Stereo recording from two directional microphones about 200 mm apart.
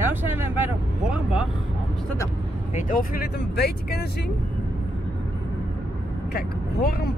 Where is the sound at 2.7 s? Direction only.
45° left (ahead or behind).